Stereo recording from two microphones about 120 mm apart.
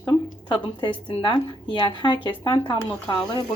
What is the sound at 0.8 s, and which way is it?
Speech, 40° left (ahead or behind).